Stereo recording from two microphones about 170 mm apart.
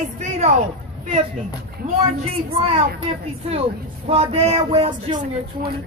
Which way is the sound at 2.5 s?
35° right (ahead or behind).